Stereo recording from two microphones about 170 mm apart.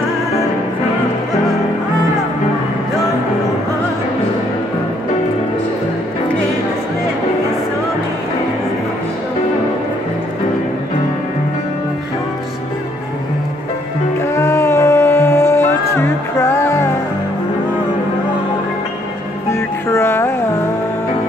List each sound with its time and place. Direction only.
14.3 s music: 15° left (ahead or behind)
19.5 s music: 15° left (ahead or behind)